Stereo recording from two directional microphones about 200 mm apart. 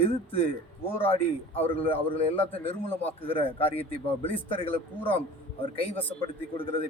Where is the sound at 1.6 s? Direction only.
30° left (ahead or behind).